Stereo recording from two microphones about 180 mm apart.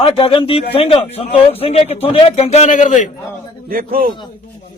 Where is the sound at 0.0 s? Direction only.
30° left (ahead or behind).